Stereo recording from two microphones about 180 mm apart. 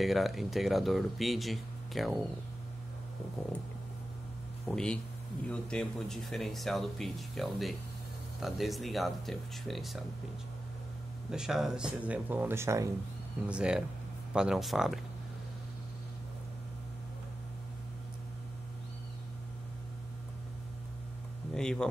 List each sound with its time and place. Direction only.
0.0 s speech: centre (ahead or behind)
4.6 s speech: 5° left (ahead or behind)
11.2 s speech: 5° right (ahead or behind)
13.5 s speech: 5° right (ahead or behind)
21.5 s speech: 5° left (ahead or behind)